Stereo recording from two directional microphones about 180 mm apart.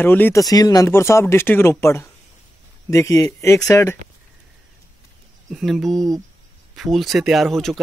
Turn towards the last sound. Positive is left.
turn(degrees=0)  # may be behind; listen again after turning